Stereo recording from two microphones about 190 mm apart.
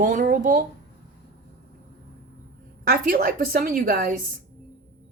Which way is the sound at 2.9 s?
50° right (ahead or behind).